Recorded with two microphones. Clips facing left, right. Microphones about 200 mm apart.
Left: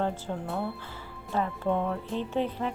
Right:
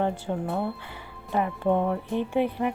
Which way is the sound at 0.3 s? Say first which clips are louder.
Right 4 dB; 10° right (ahead or behind).